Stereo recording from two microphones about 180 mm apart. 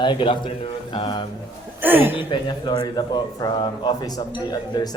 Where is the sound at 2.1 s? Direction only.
25° left (ahead or behind).